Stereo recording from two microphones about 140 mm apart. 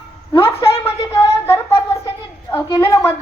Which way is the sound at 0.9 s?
20° left (ahead or behind).